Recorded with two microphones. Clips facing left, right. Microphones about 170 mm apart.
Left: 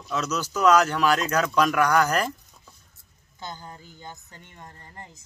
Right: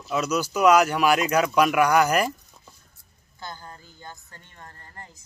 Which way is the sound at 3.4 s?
15° left (ahead or behind).